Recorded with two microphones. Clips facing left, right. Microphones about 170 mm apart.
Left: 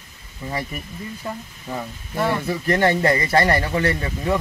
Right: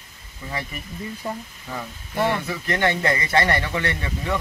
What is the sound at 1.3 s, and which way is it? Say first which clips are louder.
Speech: right 1 dB; 15° right (ahead or behind).